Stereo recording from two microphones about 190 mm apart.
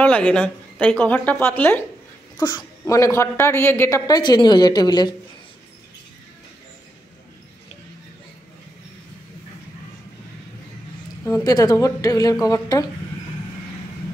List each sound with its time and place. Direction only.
0.0 s a woman's voice: 10° left (ahead or behind)
2.3 s a woman's voice: 20° left (ahead or behind)
11.2 s a woman's voice: 15° left (ahead or behind)